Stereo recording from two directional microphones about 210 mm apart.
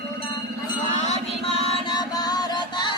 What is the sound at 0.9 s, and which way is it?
Music, 30° left (ahead or behind).